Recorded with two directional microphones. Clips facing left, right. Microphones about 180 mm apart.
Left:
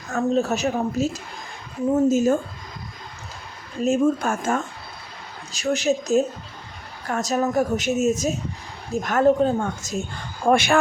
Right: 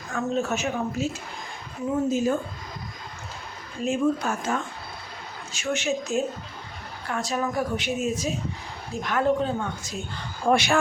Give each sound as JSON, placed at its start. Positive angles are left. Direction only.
{"t": 0.1, "sound": "a woman's voice", "side_deg": 35}
{"t": 3.8, "sound": "a woman's voice", "side_deg": 45}
{"t": 5.5, "sound": "a woman's voice", "side_deg": 35}